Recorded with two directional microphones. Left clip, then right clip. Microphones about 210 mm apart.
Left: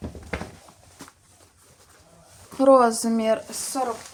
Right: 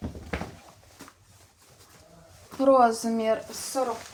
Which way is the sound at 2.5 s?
35° left (ahead or behind).